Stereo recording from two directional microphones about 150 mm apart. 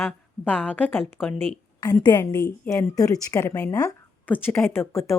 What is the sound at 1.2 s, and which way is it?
Speech, centre (ahead or behind).